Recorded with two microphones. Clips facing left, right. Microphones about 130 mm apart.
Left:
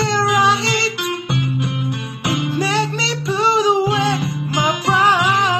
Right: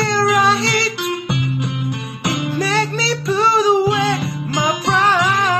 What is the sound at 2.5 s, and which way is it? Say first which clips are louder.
Music: right 2 dB; 15° left (ahead or behind).